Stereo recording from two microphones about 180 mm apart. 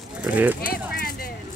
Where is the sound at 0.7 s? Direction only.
55° left (ahead or behind).